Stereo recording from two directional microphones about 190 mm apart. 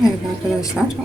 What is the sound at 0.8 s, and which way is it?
Speech, centre (ahead or behind).